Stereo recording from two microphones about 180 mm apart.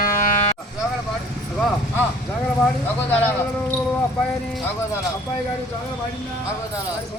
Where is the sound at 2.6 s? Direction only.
10° left (ahead or behind).